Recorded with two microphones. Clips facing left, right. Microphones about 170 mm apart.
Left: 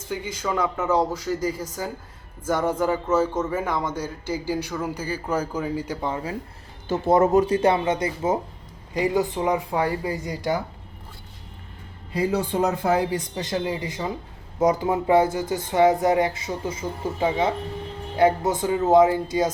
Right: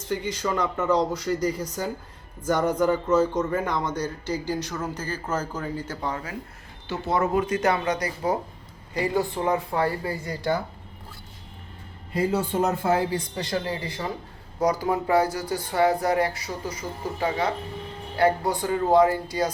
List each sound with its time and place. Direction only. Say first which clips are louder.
0.1 s a man's voice: right 1 dB; 5° left (ahead or behind)
6.8 s speech: left 7 dB; 45° left (ahead or behind)
7.3 s a man's voice: left 4 dB; 30° left (ahead or behind); by 10.6 s 15° left (ahead or behind)
12.8 s speech: left 1 dB; 20° left (ahead or behind)